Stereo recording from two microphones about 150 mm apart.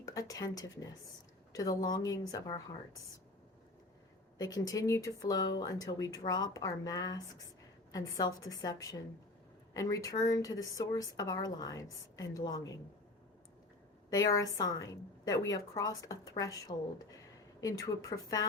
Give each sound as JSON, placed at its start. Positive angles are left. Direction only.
{"t": 0.0, "sound": "a woman's voice", "side_deg": 25}
{"t": 4.4, "sound": "a woman's voice", "side_deg": 25}
{"t": 14.1, "sound": "a woman's voice", "side_deg": 25}